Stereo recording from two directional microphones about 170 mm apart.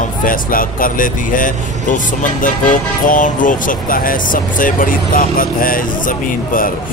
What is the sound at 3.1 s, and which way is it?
Speech, 50° left (ahead or behind).